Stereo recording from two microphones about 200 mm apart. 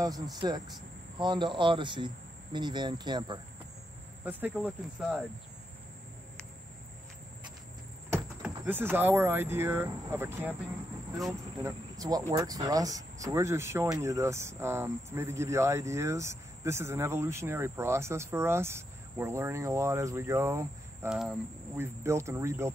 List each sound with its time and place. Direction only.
0.0 s speech: 20° right (ahead or behind)
4.2 s speech: 10° right (ahead or behind)
8.1 s speech: 10° right (ahead or behind)
11.6 s speech: 15° right (ahead or behind)
21.1 s speech: 5° right (ahead or behind)